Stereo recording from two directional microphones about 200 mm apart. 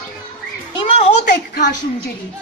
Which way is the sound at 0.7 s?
30° left (ahead or behind).